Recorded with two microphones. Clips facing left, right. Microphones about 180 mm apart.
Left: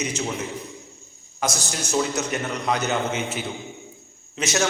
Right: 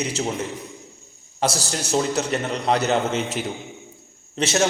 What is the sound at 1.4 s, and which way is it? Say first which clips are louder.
A man's voice: right 3 dB; 35° right (ahead or behind).